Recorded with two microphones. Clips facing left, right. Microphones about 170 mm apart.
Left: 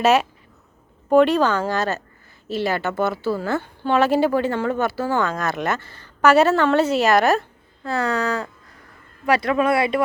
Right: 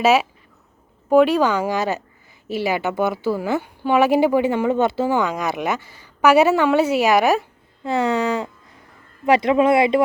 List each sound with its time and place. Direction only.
0.0 s a woman's voice: 5° right (ahead or behind); by 10.0 s 25° right (ahead or behind)